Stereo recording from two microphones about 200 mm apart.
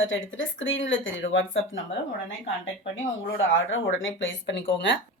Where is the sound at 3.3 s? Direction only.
75° left (ahead or behind).